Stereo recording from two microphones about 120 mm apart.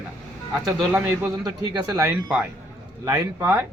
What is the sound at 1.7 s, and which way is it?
Speech, 35° right (ahead or behind).